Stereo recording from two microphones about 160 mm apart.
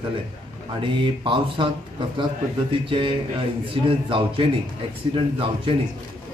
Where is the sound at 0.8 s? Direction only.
30° right (ahead or behind).